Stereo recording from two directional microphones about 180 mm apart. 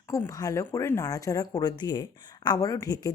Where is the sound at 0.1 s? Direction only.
15° left (ahead or behind).